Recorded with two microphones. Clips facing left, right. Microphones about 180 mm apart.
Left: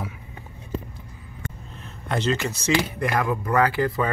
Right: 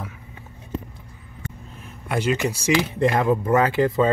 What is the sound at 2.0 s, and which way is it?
Speech, 10° right (ahead or behind).